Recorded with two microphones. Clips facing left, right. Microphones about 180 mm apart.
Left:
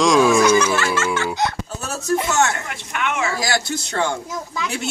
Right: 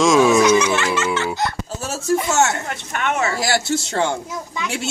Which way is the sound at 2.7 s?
40° right (ahead or behind).